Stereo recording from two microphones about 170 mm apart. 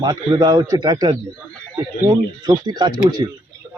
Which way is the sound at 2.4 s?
25° right (ahead or behind).